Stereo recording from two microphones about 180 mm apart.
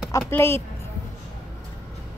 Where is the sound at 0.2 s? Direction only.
10° left (ahead or behind).